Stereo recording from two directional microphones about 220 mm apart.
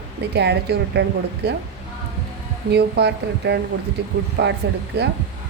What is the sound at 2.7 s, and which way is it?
Speech, 50° right (ahead or behind).